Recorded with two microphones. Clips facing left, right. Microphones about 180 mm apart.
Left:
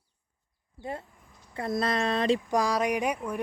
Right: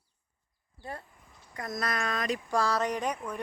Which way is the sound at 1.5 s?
30° left (ahead or behind).